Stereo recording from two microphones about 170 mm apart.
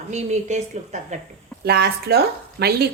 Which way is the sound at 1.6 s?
70° right (ahead or behind).